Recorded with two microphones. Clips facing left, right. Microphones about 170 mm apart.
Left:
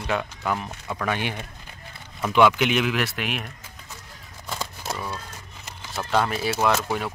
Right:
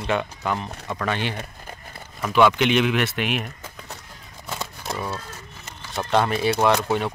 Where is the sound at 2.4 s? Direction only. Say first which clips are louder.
Right 1 dB; 5° left (ahead or behind).